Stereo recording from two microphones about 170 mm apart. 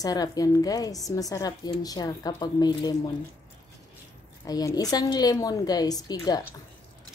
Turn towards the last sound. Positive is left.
turn(degrees=25)  # may be behind; listen again after turning